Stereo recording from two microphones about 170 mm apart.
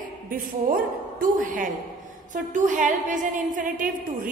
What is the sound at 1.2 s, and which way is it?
A woman's voice, 50° right (ahead or behind).